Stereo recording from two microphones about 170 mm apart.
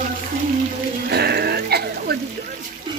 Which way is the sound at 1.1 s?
70° right (ahead or behind).